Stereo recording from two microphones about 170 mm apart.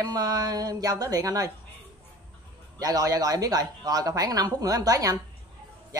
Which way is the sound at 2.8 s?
20° right (ahead or behind).